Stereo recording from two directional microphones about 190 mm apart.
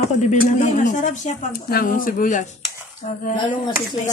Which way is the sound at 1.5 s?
50° left (ahead or behind).